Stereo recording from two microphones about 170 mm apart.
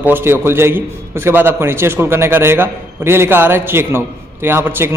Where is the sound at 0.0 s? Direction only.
15° right (ahead or behind).